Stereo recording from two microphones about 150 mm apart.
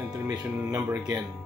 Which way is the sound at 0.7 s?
25° right (ahead or behind).